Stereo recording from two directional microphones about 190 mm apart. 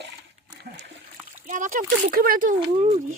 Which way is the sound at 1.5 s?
40° right (ahead or behind).